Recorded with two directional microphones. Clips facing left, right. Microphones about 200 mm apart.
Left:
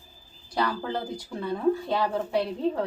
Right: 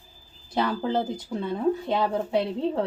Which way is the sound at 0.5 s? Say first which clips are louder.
Right 3 dB; 20° right (ahead or behind).